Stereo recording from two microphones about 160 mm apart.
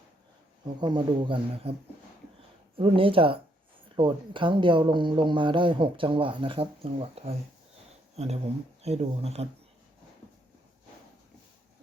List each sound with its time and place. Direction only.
0.8 s speech: 30° right (ahead or behind)
2.7 s speech: 35° right (ahead or behind)